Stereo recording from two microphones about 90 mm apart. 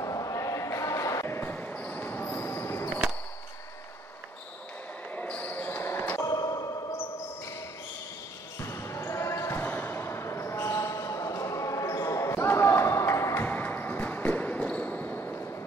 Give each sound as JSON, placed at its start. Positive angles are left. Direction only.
{"t": 0.0, "sound": "a sound", "side_deg": 40}
{"t": 1.2, "sound": "basketball bounce", "side_deg": 25}
{"t": 5.1, "sound": "basketball bounce", "side_deg": 20}
{"t": 6.2, "sound": "music", "side_deg": 45}
{"t": 8.5, "sound": "basketball bounce", "side_deg": 30}